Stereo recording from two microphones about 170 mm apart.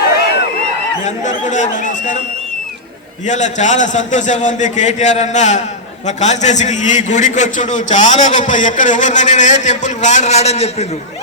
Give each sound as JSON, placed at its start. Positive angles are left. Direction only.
{"t": 1.5, "sound": "speech", "side_deg": 45}
{"t": 3.2, "sound": "a man's voice", "side_deg": 45}